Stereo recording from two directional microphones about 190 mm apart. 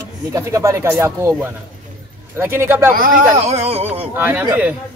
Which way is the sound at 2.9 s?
45° right (ahead or behind).